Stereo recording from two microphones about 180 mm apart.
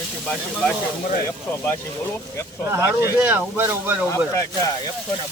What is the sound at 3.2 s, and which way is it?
Speech, 10° right (ahead or behind).